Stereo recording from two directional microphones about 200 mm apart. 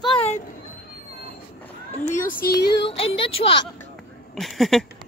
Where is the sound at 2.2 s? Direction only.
50° left (ahead or behind).